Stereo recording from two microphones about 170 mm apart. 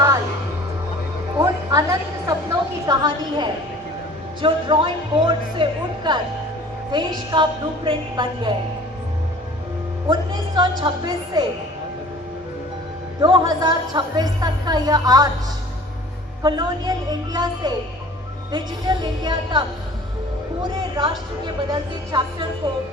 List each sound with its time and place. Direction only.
1.4 s a sound: 20° right (ahead or behind)
4.4 s speech: 30° right (ahead or behind)
10.1 s speech: 25° right (ahead or behind)
13.2 s speech: 25° right (ahead or behind)
16.4 s speech: 25° right (ahead or behind)
20.9 s speech: 25° right (ahead or behind)